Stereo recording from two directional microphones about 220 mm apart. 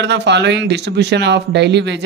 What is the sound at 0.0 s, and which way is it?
Speech, 50° right (ahead or behind).